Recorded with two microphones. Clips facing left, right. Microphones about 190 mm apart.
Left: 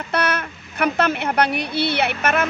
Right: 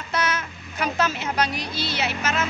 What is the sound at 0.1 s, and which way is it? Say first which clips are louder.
Speech: left 3 dB; 60° left (ahead or behind).